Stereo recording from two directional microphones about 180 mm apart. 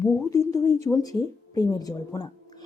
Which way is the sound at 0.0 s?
20° left (ahead or behind).